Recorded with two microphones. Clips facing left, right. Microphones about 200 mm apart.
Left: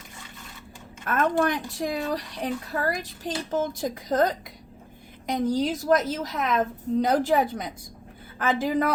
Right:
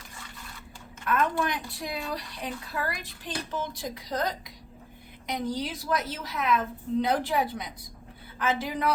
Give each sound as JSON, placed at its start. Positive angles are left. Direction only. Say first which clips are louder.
{"t": 1.0, "sound": "speech", "louder": "left 4 dB", "side_deg": 45}